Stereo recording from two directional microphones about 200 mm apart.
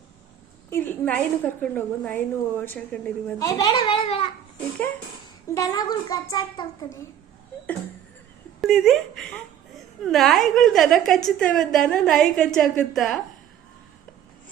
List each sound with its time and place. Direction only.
0.7 s a woman's voice: 10° left (ahead or behind)
3.3 s a child's voice: 15° left (ahead or behind)
5.5 s a child's voice: 20° left (ahead or behind)
8.6 s a woman's voice: centre (ahead or behind)